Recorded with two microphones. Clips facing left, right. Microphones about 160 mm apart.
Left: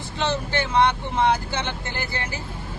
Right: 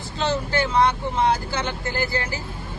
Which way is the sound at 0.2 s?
20° left (ahead or behind).